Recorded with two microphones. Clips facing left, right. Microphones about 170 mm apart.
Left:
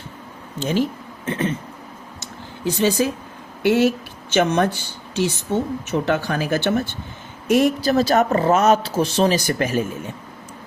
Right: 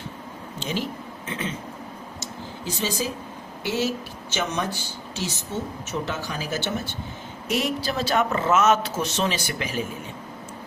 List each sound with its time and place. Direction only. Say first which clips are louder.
0.6 s speech: left 8 dB; 50° left (ahead or behind)
2.2 s a sound: left 8 dB; 60° left (ahead or behind)
3.6 s speech: left 9 dB; 60° left (ahead or behind)
7.5 s speech: left 9 dB; 50° left (ahead or behind)